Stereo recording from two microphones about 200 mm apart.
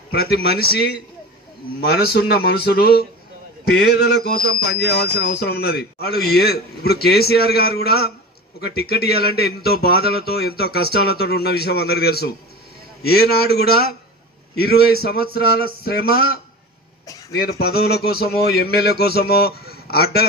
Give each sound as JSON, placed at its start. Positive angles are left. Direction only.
{"t": 0.1, "sound": "speech", "side_deg": 50}
{"t": 2.0, "sound": "speech", "side_deg": 55}